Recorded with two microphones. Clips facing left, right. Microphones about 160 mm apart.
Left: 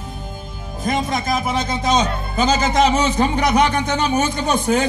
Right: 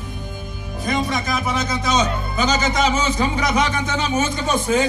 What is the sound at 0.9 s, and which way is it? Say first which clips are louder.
Music: left 2 dB; 45° left (ahead or behind).